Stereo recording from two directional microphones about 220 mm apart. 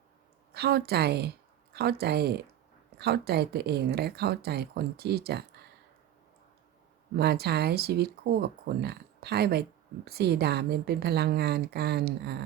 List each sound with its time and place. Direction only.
0.5 s speech: 45° right (ahead or behind)
7.2 s speech: 45° right (ahead or behind)